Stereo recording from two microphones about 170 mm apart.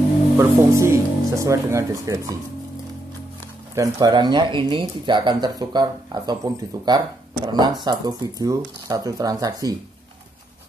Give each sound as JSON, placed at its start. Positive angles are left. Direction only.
{"t": 0.4, "sound": "speech", "side_deg": -15}
{"t": 3.7, "sound": "speech", "side_deg": -20}